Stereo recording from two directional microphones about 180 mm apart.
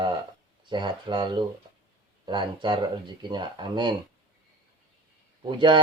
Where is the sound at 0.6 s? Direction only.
25° right (ahead or behind).